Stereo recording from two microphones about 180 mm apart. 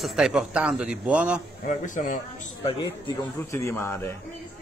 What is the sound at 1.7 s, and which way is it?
A man's voice, 45° left (ahead or behind).